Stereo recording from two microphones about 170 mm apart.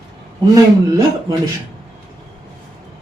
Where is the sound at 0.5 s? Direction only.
20° right (ahead or behind).